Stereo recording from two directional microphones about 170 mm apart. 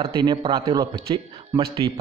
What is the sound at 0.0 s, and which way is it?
A man's voice, 25° right (ahead or behind).